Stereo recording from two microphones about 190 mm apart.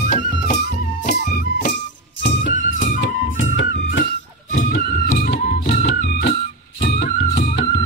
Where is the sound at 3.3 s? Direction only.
80° left.